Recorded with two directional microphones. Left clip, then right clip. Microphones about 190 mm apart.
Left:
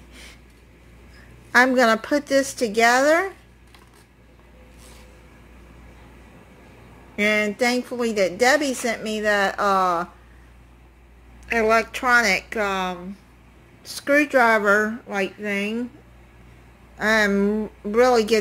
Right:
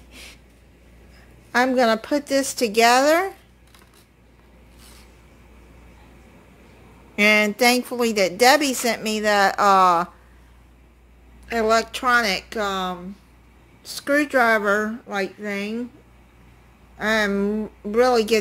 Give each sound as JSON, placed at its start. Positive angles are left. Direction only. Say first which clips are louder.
{"t": 0.1, "sound": "vehicle", "louder": "right 2 dB", "side_deg": -20}
{"t": 1.5, "sound": "a woman's voice", "louder": "left 2 dB", "side_deg": -5}
{"t": 7.2, "sound": "a woman's voice", "louder": "right 3 dB", "side_deg": -25}
{"t": 11.4, "sound": "a woman's voice", "louder": "left 1 dB", "side_deg": -15}
{"t": 16.9, "sound": "speech", "louder": "left 2 dB", "side_deg": 0}